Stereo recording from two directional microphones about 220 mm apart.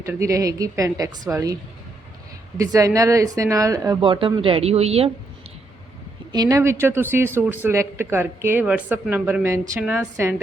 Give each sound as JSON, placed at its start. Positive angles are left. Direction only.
{"t": 0.0, "sound": "speech", "side_deg": -15}
{"t": 2.6, "sound": "speech", "side_deg": -15}
{"t": 6.3, "sound": "speech", "side_deg": -15}